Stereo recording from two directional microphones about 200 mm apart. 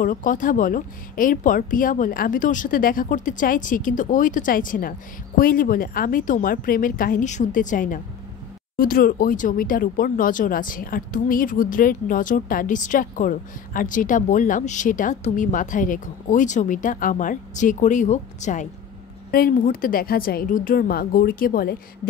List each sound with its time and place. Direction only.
0.0 s a woman's voice: 40° left (ahead or behind)